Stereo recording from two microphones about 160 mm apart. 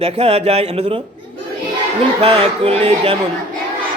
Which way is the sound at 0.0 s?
40° right (ahead or behind).